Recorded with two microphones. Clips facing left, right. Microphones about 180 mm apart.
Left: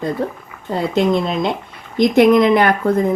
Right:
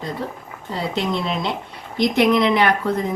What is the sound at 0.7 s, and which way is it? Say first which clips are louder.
Speech: left 7 dB; 50° left (ahead or behind).